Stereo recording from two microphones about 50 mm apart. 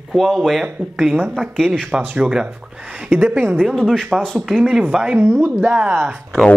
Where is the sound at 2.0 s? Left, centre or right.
Right.